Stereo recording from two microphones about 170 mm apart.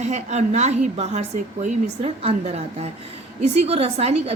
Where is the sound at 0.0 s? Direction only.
40° right (ahead or behind).